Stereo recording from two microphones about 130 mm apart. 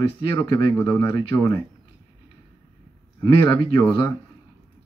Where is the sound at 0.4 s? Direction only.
30° left (ahead or behind).